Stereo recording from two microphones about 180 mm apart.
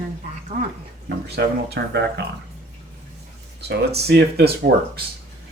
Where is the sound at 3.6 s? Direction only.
65° right (ahead or behind).